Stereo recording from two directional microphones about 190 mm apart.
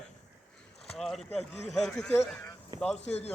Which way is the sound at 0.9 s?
Centre (ahead or behind).